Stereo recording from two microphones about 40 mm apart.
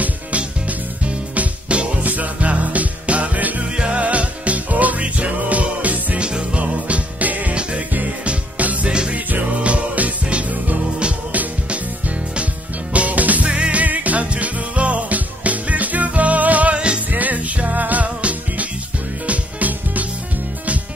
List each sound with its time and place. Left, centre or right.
0.0 s music: right
3.7 s music: right
4.0 s music: right
6.1 s music: right
6.6 s music: right
8.8 s music: right
9.1 s music: right
12.9 s music: right
13.5 s music: right
16.7 s music: right
17.1 s music: right